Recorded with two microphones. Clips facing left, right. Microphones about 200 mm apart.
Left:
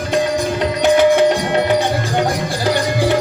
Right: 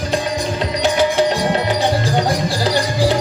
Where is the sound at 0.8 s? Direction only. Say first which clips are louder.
Left 6 dB; 55° left (ahead or behind).